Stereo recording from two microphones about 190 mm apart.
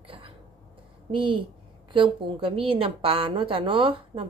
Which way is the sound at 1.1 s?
25° right (ahead or behind).